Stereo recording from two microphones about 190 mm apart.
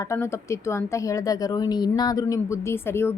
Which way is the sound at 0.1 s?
15° left (ahead or behind).